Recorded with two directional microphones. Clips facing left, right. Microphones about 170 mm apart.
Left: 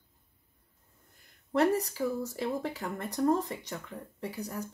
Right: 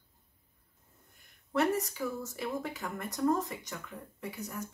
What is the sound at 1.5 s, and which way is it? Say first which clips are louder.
Speech: left 3 dB; 30° left (ahead or behind).